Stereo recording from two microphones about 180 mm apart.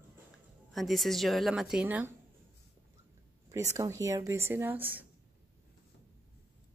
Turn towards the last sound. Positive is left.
turn(degrees=-10)  # may be behind; listen again after turning